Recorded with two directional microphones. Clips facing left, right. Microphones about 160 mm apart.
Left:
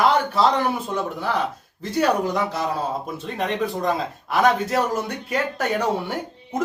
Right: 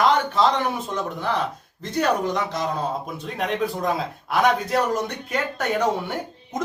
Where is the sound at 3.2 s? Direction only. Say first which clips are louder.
Even; centre (ahead or behind).